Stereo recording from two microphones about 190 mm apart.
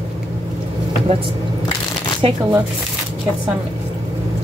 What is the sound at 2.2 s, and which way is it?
Speech, 30° right (ahead or behind).